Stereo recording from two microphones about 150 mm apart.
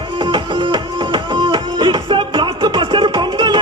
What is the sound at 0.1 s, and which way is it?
Music, 30° right (ahead or behind).